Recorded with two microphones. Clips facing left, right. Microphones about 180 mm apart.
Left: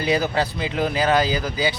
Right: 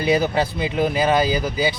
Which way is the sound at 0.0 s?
20° right (ahead or behind).